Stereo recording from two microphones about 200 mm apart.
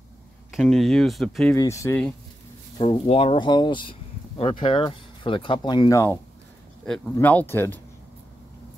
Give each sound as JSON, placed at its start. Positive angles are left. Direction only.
{"t": 0.5, "sound": "speech", "side_deg": 0}
{"t": 1.6, "sound": "speech", "side_deg": 15}
{"t": 2.8, "sound": "speech", "side_deg": 25}